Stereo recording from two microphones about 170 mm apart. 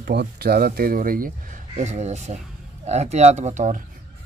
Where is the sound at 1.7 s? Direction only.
40° right (ahead or behind).